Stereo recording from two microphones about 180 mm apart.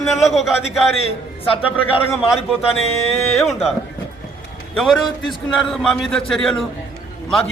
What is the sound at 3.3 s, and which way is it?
Speech, centre (ahead or behind).